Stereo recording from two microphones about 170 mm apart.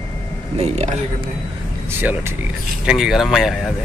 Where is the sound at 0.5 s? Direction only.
40° right (ahead or behind).